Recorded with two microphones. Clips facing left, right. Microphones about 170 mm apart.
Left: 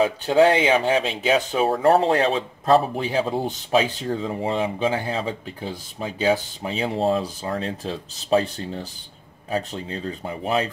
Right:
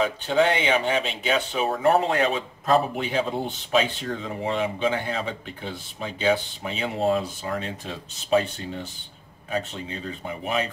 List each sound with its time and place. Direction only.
0.4 s speech: 35° left (ahead or behind)